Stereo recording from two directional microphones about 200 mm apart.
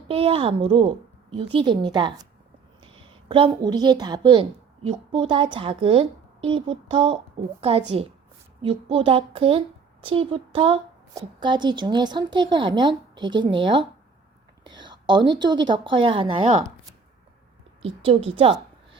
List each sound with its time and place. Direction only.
0.1 s a woman's voice: 30° right (ahead or behind)
17.8 s a child's voice: 30° right (ahead or behind)